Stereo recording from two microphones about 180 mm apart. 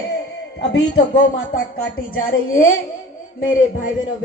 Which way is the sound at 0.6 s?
65° left (ahead or behind).